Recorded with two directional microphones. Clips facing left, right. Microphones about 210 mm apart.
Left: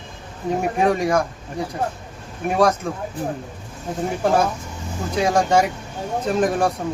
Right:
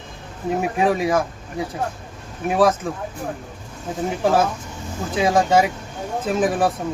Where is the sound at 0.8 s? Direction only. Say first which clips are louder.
Even; 5° right (ahead or behind).